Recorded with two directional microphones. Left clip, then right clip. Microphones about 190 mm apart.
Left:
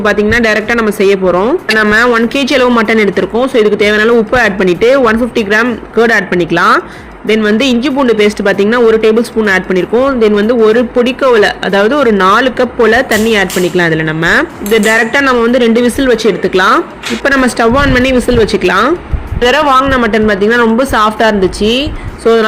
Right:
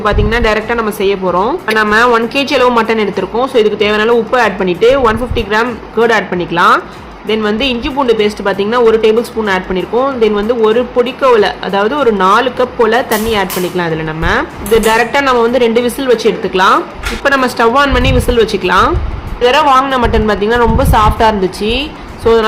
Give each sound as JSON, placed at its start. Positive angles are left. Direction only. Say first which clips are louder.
{"t": 0.0, "sound": "a woman's voice", "louder": "left 3 dB", "side_deg": 20}
{"t": 19.4, "sound": "a man's voice", "louder": "even", "side_deg": 35}
{"t": 19.8, "sound": "speech", "louder": "left 2 dB", "side_deg": 5}